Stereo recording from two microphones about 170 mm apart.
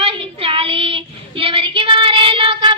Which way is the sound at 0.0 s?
35° right (ahead or behind).